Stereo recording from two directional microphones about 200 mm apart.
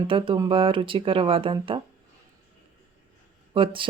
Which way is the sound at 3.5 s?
25° right (ahead or behind).